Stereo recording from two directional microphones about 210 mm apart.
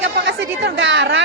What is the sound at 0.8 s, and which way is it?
Speech, 60° right (ahead or behind).